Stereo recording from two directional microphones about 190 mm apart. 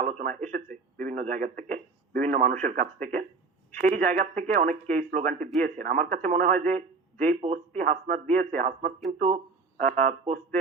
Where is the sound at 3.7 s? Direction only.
40° right (ahead or behind).